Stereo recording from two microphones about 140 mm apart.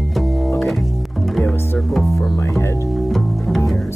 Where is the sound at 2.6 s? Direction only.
20° left (ahead or behind).